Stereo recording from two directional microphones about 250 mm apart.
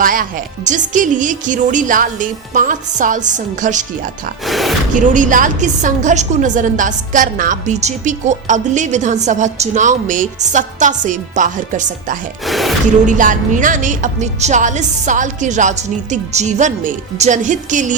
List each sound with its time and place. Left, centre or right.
0.0 s speech: right
4.4 s speech: centre
4.9 s a woman's voice: right
12.5 s speech: centre
13.1 s a woman's voice: right